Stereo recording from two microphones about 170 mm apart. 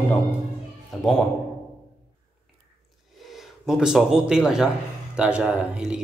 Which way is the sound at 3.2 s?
Centre (ahead or behind).